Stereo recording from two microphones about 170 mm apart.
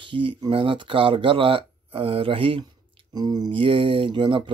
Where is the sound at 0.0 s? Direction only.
30° right (ahead or behind).